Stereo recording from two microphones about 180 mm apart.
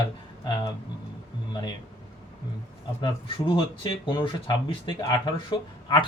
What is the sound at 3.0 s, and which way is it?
A man's voice, 25° left (ahead or behind).